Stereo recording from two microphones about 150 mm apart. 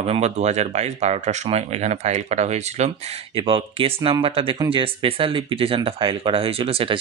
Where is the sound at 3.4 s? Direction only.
35° right (ahead or behind).